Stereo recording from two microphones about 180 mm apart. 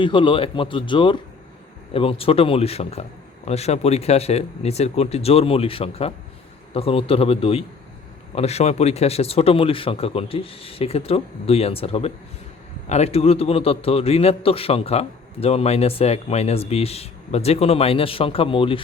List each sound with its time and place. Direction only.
0.0 s a man's voice: 25° left (ahead or behind)